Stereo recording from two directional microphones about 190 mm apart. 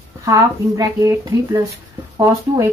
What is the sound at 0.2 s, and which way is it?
Speech, 15° right (ahead or behind).